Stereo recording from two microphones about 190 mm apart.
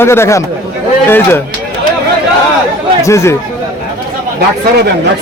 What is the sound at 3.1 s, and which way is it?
Speech, 15° left (ahead or behind).